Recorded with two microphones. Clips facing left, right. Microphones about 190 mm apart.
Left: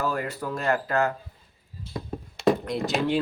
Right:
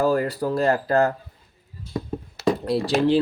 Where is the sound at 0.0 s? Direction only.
35° right (ahead or behind).